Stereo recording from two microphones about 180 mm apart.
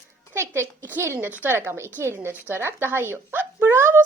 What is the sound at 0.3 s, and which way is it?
A woman's voice, 15° right (ahead or behind).